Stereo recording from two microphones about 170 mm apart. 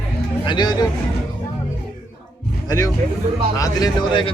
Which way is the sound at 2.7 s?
20° left (ahead or behind).